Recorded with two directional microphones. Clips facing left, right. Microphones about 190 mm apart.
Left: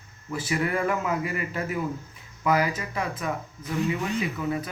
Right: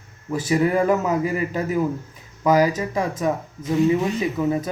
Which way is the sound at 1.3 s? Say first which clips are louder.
Right 7 dB; 35° right (ahead or behind).